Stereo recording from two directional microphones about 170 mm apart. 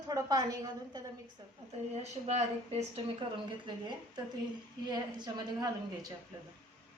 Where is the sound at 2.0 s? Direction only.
40° right (ahead or behind).